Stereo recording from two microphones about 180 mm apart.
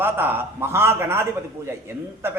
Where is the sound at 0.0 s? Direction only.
10° right (ahead or behind).